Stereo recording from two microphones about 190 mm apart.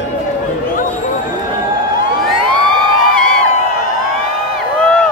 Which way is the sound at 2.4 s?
5° left (ahead or behind).